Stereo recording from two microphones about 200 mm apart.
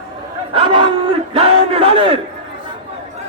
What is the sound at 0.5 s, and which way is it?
Battle cry, 25° right (ahead or behind).